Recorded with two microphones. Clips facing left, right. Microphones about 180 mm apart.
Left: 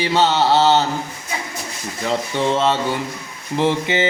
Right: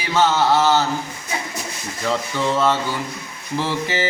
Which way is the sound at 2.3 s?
25° left (ahead or behind).